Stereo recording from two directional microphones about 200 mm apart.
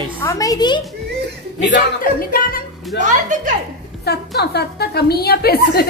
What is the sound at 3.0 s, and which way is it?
Speech, 40° right (ahead or behind).